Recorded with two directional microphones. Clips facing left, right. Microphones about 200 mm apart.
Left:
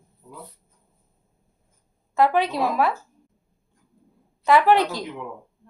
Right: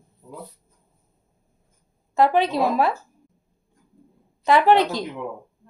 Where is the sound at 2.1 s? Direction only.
25° right (ahead or behind).